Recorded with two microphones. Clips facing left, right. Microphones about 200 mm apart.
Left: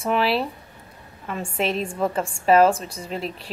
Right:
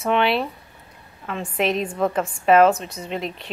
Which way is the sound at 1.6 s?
30° left (ahead or behind).